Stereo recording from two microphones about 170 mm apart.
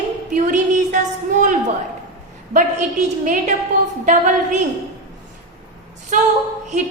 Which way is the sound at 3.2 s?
50° right (ahead or behind).